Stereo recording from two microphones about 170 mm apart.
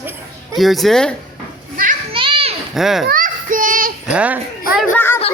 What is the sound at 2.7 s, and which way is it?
Speech, centre (ahead or behind).